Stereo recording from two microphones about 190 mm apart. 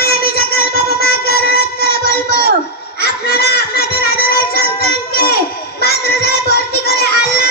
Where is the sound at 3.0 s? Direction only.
55° left (ahead or behind).